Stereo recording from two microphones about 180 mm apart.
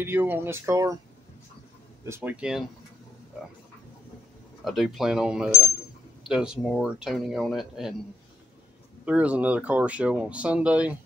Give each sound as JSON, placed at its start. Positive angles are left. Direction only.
{"t": 0.0, "sound": "speech", "side_deg": -10}
{"t": 2.0, "sound": "speech", "side_deg": -10}
{"t": 4.6, "sound": "speech", "side_deg": 0}
{"t": 9.0, "sound": "speech", "side_deg": -5}